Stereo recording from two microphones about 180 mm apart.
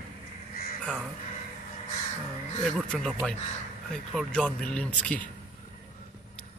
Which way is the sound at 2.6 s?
Centre (ahead or behind).